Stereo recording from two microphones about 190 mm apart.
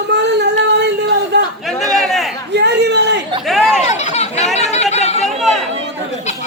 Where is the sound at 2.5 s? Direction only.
60° right (ahead or behind).